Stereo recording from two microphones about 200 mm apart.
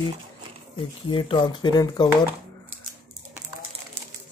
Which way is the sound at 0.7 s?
25° left (ahead or behind).